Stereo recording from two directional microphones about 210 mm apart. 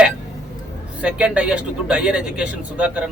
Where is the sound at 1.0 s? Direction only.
5° right (ahead or behind).